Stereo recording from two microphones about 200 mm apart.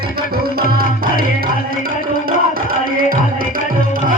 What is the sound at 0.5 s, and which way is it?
Music, 45° right (ahead or behind).